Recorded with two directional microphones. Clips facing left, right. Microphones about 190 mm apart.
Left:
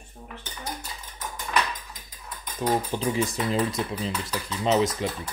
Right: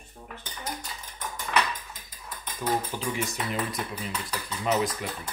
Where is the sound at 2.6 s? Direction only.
35° left (ahead or behind).